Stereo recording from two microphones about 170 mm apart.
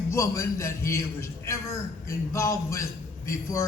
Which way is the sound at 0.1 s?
15° left (ahead or behind).